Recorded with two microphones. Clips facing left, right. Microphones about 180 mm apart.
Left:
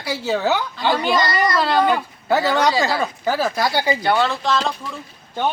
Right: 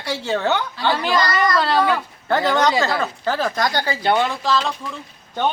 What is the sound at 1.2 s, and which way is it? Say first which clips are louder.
Speech: even; 25° left (ahead or behind).